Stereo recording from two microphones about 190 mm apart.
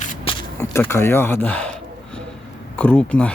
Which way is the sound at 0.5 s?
10° left (ahead or behind).